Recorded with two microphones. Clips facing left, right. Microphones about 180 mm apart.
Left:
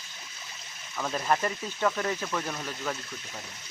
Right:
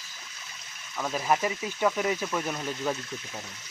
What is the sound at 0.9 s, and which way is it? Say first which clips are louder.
Speech: right 1 dB; 5° right (ahead or behind).